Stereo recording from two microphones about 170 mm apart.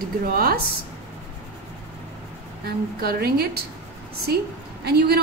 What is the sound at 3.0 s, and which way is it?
Speech, 65° right (ahead or behind).